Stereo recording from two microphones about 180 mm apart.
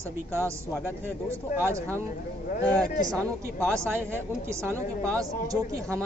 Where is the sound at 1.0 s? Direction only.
15° right (ahead or behind).